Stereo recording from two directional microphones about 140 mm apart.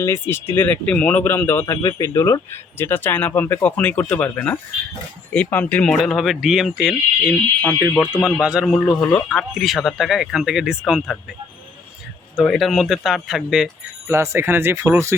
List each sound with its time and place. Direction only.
0.0 s a man's voice: 20° left (ahead or behind); by 11.0 s 5° right (ahead or behind)
12.4 s speech: centre (ahead or behind)
14.1 s speech: 20° right (ahead or behind)